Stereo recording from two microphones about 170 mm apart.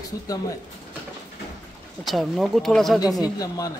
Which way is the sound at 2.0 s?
Centre (ahead or behind).